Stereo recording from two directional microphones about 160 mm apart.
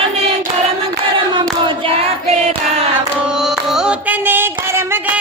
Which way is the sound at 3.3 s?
Centre (ahead or behind).